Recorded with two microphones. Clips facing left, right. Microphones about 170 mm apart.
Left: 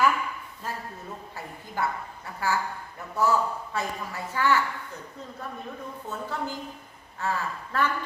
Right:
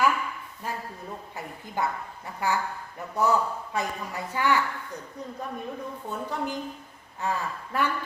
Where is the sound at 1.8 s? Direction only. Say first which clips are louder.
Right 1 dB; 15° right (ahead or behind).